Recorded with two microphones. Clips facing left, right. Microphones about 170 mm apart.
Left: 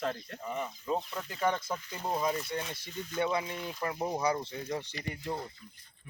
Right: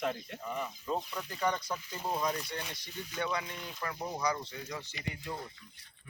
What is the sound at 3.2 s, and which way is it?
Speech, 25° left (ahead or behind).